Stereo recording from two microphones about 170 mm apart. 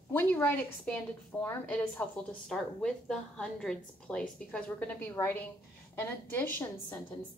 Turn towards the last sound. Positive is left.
turn(degrees=15)  # may be behind; listen again after turning